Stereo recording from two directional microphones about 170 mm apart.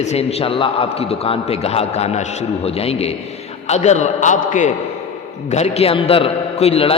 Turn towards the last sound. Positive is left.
turn(degrees=35)  # may be behind; listen again after turning